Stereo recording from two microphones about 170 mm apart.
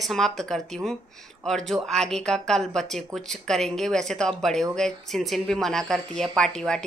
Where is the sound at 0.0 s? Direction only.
Centre (ahead or behind).